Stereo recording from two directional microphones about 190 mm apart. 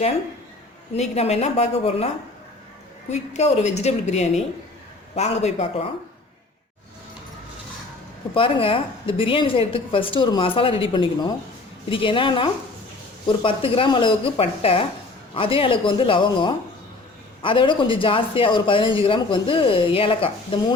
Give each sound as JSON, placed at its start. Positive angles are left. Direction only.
{"t": 0.9, "sound": "a woman's voice", "side_deg": 35}
{"t": 3.1, "sound": "a woman's voice", "side_deg": 35}
{"t": 8.3, "sound": "speech", "side_deg": 25}